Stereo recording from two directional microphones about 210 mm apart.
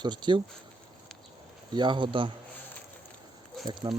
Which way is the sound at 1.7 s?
20° right (ahead or behind).